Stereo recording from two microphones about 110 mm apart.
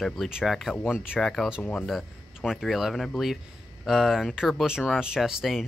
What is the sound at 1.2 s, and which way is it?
Speech, 5° left (ahead or behind).